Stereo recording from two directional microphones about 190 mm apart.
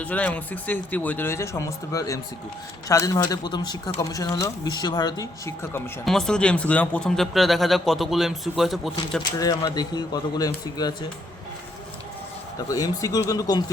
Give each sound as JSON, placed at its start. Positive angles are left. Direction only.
{"t": 0.0, "sound": "a man's voice", "side_deg": 10}
{"t": 6.1, "sound": "speech", "side_deg": 5}
{"t": 9.4, "sound": "speech", "side_deg": 20}
{"t": 12.6, "sound": "speech", "side_deg": 20}